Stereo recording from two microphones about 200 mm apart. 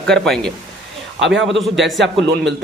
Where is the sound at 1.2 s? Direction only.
65° right (ahead or behind).